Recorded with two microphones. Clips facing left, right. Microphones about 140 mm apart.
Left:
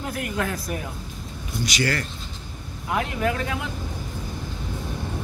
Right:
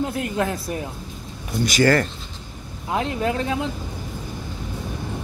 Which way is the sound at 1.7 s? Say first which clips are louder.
Right 9 dB; 45° right (ahead or behind).